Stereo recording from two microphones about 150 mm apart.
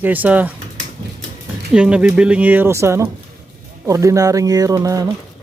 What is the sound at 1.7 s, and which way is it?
Speech, 5° right (ahead or behind).